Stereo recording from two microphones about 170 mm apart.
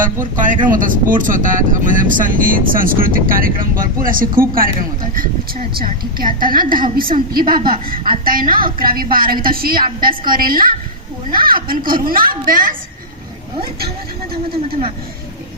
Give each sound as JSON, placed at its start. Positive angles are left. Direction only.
{"t": 0.0, "sound": "a woman's voice", "side_deg": -50}